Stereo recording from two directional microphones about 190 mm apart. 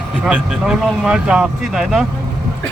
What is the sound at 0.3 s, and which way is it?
Speech, 5° right (ahead or behind).